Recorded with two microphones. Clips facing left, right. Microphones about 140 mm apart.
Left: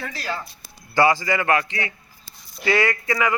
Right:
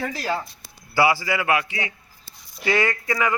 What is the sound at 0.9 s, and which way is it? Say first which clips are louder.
A man's voice: left 1 dB; 10° right (ahead or behind).